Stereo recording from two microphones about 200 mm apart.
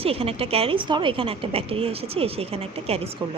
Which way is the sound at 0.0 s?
30° right (ahead or behind).